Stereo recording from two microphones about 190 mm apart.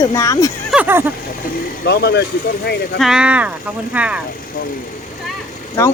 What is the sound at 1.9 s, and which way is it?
Speech, 60° left (ahead or behind).